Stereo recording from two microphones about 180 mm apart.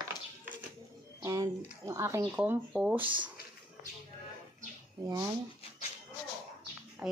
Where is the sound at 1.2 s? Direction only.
20° right (ahead or behind).